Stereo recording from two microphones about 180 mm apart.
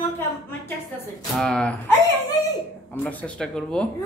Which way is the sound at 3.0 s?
5° left (ahead or behind).